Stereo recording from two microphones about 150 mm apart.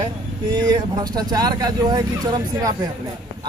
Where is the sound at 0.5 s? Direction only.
25° right (ahead or behind).